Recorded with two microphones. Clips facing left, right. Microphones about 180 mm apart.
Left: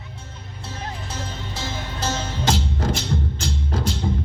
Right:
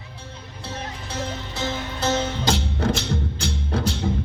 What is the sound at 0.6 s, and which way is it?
Music, 60° right (ahead or behind).